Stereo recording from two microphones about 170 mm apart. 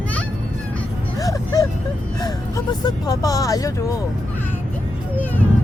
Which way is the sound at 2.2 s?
25° left (ahead or behind).